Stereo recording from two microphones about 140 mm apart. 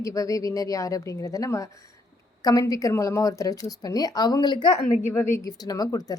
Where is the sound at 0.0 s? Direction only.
25° left (ahead or behind).